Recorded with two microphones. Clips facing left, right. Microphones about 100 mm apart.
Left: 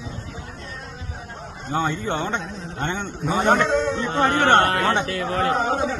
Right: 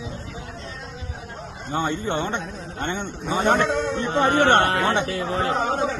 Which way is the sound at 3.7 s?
50° right (ahead or behind).